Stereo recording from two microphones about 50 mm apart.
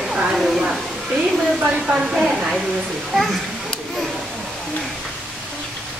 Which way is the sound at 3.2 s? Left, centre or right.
Centre.